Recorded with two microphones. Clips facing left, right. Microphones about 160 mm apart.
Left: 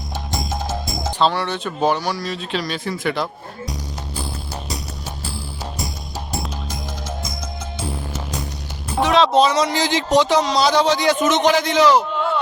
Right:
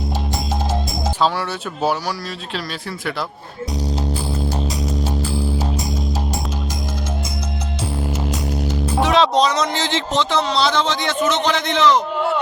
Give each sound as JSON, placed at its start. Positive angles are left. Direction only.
{"t": 1.2, "sound": "speech", "side_deg": -5}
{"t": 9.0, "sound": "speech", "side_deg": 0}
{"t": 11.6, "sound": "speech", "side_deg": 10}